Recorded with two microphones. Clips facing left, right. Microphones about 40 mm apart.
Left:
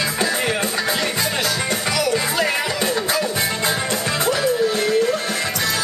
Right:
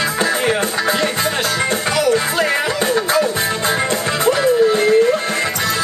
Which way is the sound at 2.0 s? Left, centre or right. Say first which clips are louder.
Right 5 dB; right.